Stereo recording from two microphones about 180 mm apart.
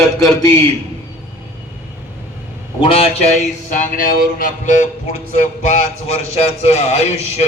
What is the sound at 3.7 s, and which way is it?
A man's voice, 45° left (ahead or behind).